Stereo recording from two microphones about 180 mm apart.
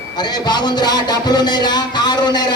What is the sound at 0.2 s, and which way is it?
A man's voice, 25° left (ahead or behind).